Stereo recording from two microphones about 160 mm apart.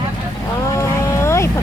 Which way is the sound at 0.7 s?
20° left (ahead or behind).